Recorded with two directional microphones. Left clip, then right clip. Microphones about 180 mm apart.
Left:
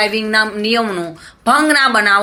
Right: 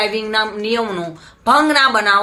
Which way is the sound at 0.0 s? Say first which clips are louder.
Left 3 dB; 15° left (ahead or behind).